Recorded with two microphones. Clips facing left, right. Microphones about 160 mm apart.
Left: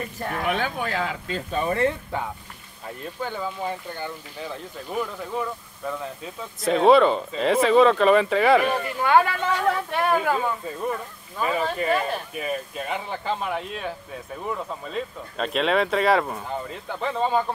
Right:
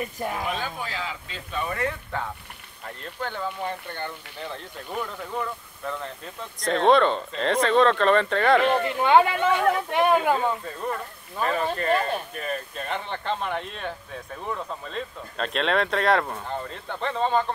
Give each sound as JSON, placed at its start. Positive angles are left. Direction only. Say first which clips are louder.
{"t": 0.5, "sound": "speech", "louder": "left 5 dB", "side_deg": 60}
{"t": 1.6, "sound": "speech", "louder": "left 5 dB", "side_deg": 30}
{"t": 3.0, "sound": "speech", "louder": "left 1 dB", "side_deg": 10}
{"t": 8.8, "sound": "speech", "louder": "right 1 dB", "side_deg": -20}
{"t": 11.4, "sound": "speech", "louder": "left 1 dB", "side_deg": 5}